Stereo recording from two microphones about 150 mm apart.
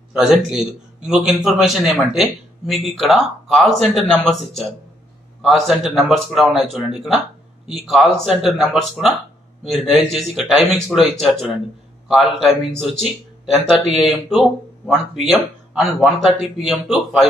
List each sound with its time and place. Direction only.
0.1 s a man's voice: 5° right (ahead or behind)